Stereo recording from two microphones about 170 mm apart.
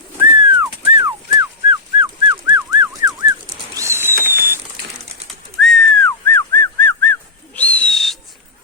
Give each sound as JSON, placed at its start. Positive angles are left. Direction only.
{"t": 0.3, "sound": "dog", "side_deg": -30}
{"t": 3.8, "sound": "a sound", "side_deg": -15}
{"t": 4.2, "sound": "ratchet", "side_deg": -15}
{"t": 5.3, "sound": "bird", "side_deg": 0}
{"t": 6.1, "sound": "whistling", "side_deg": 10}